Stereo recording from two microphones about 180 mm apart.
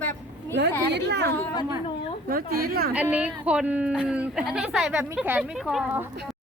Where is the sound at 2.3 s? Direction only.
55° right (ahead or behind).